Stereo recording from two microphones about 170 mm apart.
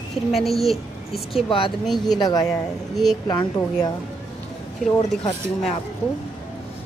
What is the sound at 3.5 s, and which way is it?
Speech, 20° left (ahead or behind).